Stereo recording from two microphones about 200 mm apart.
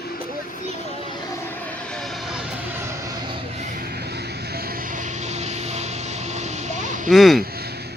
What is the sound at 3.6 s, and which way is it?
Vehicle, 45° right (ahead or behind).